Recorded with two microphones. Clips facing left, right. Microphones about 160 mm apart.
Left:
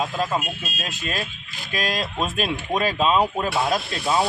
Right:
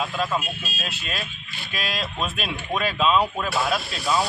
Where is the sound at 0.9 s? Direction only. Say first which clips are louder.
Left 6 dB; 45° left (ahead or behind).